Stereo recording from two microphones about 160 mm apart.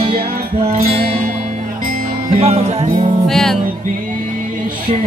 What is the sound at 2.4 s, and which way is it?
Music, 40° right (ahead or behind).